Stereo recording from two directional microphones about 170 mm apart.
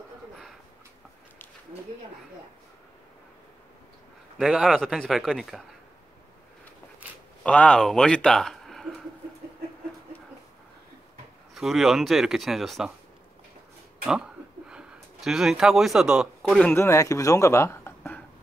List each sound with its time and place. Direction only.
4.4 s speech: centre (ahead or behind)
7.4 s speech: 5° left (ahead or behind)
11.5 s speech: centre (ahead or behind)
14.0 s a sound: 5° right (ahead or behind)
16.6 s speech: 15° left (ahead or behind)